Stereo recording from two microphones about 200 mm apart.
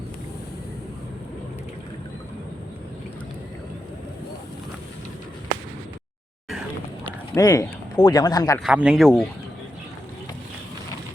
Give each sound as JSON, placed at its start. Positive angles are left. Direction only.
{"t": 7.0, "sound": "speech", "side_deg": 15}
{"t": 8.6, "sound": "speech", "side_deg": -5}